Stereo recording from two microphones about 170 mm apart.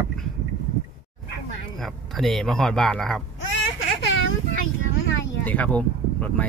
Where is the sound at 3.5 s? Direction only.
90° left.